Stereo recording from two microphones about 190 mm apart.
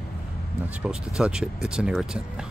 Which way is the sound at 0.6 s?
5° right (ahead or behind).